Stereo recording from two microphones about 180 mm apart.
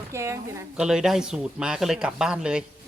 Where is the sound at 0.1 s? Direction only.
15° right (ahead or behind).